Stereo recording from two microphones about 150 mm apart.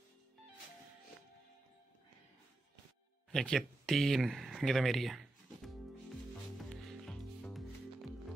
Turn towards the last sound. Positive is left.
turn(degrees=5)  # may be behind; listen again after turning